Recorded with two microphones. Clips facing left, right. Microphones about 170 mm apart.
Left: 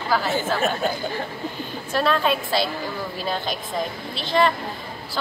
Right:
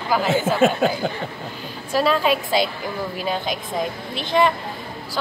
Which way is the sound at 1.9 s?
5° right (ahead or behind).